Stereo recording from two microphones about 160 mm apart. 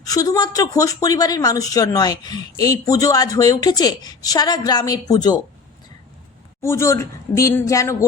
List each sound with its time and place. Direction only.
0.0 s a woman's voice: 20° left (ahead or behind)
6.6 s a woman's voice: 15° left (ahead or behind)